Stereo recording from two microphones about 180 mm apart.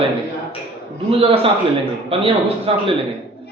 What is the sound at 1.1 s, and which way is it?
A man's voice, 30° right (ahead or behind).